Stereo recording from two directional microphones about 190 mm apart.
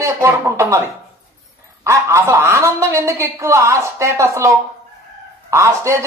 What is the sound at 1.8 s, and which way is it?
A man's voice, 15° right (ahead or behind).